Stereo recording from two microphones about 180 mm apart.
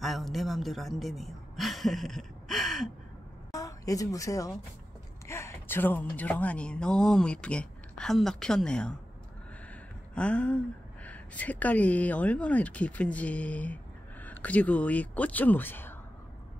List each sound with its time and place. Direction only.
0.0 s a man's voice: centre (ahead or behind)
3.5 s a woman's voice: 20° left (ahead or behind)
10.1 s speech: 5° left (ahead or behind)